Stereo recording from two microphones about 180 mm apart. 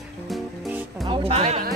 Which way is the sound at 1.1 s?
35° right (ahead or behind).